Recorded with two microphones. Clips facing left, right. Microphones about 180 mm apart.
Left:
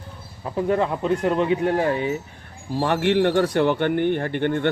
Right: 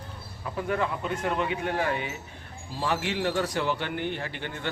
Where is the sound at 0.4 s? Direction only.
30° left (ahead or behind).